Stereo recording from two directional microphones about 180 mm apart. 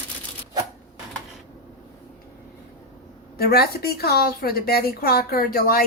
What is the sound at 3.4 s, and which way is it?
A woman's voice, 60° left (ahead or behind).